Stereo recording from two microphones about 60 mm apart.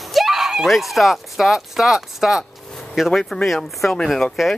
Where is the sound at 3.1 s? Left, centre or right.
Centre.